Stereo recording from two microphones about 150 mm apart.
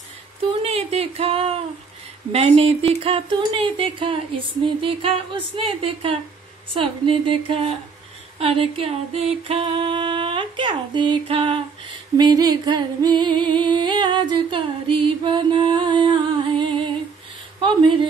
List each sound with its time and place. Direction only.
0.4 s a sound: 40° right (ahead or behind)
2.3 s singing: 40° right (ahead or behind)
12.2 s singing: 25° right (ahead or behind)